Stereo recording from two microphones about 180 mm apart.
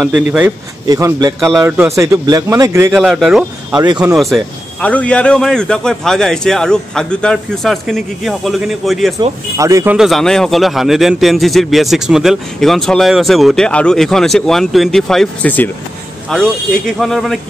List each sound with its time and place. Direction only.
0.1 s a man's voice: 10° right (ahead or behind)
2.9 s a man's voice: centre (ahead or behind)
3.7 s a man's voice: 20° right (ahead or behind)
4.0 s a man's voice: 5° right (ahead or behind)
4.8 s a man's voice: 5° left (ahead or behind)
9.2 s speech: 20° right (ahead or behind)
9.9 s a man's voice: centre (ahead or behind)